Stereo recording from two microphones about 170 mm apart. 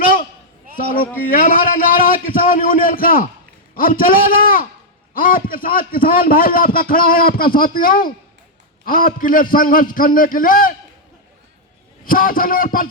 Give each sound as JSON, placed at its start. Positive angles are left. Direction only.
{"t": 0.0, "sound": "a sound", "side_deg": 55}
{"t": 0.8, "sound": "a man's voice", "side_deg": 55}
{"t": 12.0, "sound": "a man's voice", "side_deg": 55}